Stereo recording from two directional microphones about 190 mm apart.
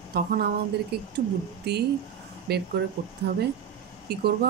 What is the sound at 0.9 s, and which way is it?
Speech, 55° right (ahead or behind).